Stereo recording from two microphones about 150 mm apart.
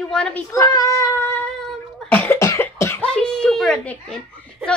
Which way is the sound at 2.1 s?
10° left (ahead or behind).